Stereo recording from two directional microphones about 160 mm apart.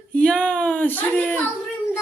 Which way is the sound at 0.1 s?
5° left (ahead or behind).